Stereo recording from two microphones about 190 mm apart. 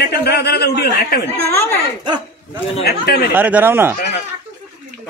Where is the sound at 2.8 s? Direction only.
55° left (ahead or behind).